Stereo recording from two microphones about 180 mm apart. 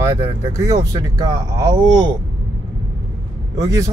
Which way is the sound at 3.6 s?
20° right (ahead or behind).